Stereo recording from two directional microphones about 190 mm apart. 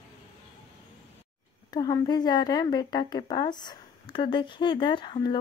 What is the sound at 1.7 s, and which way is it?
A woman's voice, 20° left (ahead or behind).